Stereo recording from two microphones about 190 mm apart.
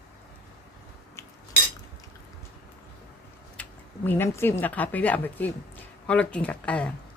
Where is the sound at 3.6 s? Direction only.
10° left (ahead or behind).